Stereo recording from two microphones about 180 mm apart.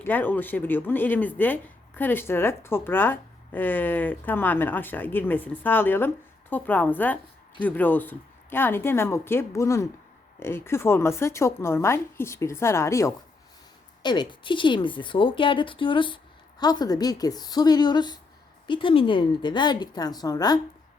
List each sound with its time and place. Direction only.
0.0 s a woman's voice: 10° left (ahead or behind)